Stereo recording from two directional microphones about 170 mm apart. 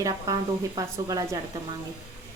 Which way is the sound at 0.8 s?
20° right (ahead or behind).